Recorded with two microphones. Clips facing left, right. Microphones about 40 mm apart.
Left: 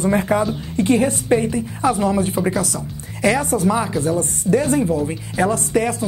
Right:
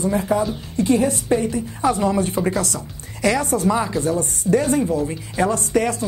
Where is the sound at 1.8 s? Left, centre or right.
Centre.